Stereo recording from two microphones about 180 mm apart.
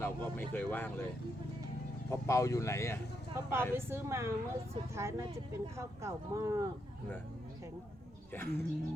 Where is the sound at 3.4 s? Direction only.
15° right (ahead or behind).